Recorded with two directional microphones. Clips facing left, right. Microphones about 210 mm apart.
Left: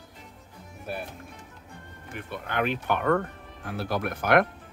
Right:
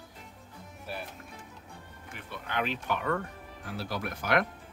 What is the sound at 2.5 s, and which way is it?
Speech, 55° left (ahead or behind).